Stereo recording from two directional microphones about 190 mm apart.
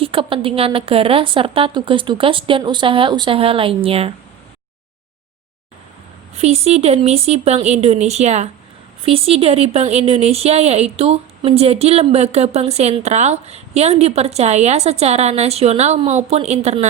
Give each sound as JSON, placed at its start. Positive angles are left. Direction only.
{"t": 0.0, "sound": "a woman's voice", "side_deg": -30}
{"t": 6.3, "sound": "speech", "side_deg": -35}